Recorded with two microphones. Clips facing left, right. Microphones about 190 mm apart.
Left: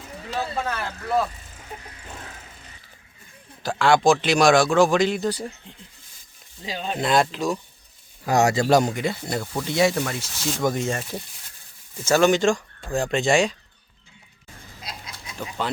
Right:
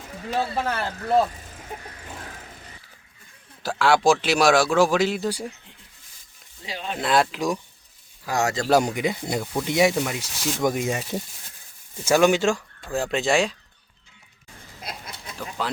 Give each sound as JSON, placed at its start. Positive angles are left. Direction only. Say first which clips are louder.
{"t": 0.7, "sound": "speech", "louder": "right 3 dB", "side_deg": -30}
{"t": 3.6, "sound": "a man's voice", "louder": "left 1 dB", "side_deg": -5}
{"t": 6.7, "sound": "speech", "louder": "left 2 dB", "side_deg": 25}
{"t": 7.0, "sound": "speech", "louder": "left 1 dB", "side_deg": -5}
{"t": 7.3, "sound": "a man's voice", "louder": "even", "side_deg": -15}
{"t": 8.3, "sound": "speech", "louder": "left 5 dB", "side_deg": 20}
{"t": 8.7, "sound": "a man's voice", "louder": "left 1 dB", "side_deg": -10}
{"t": 14.9, "sound": "a sound", "louder": "right 2 dB", "side_deg": -55}
{"t": 15.4, "sound": "speech", "louder": "left 1 dB", "side_deg": 0}